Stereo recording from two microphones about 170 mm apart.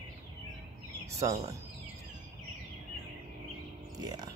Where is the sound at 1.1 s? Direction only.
20° right (ahead or behind).